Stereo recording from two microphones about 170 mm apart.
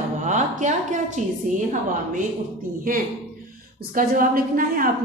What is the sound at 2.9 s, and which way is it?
A woman's voice, 55° right (ahead or behind).